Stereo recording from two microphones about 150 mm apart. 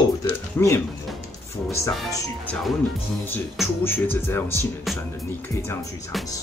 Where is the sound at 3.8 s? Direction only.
15° left (ahead or behind).